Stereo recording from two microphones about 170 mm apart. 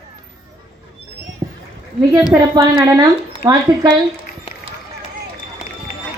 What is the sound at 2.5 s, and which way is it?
Speech, 20° right (ahead or behind).